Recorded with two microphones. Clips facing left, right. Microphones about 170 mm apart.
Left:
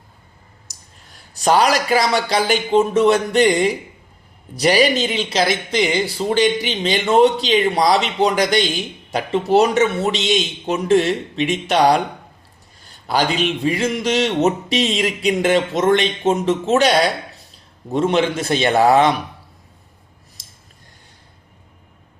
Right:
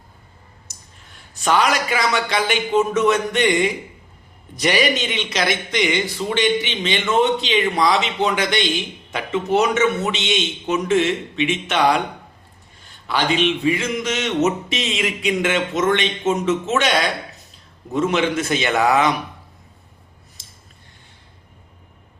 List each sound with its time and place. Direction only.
0.7 s a man's voice: 35° left (ahead or behind)